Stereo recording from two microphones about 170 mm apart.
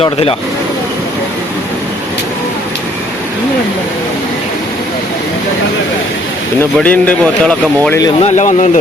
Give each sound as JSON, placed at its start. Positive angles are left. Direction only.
{"t": 0.0, "sound": "speech", "side_deg": 35}
{"t": 6.6, "sound": "speech", "side_deg": 10}
{"t": 8.2, "sound": "speech", "side_deg": 45}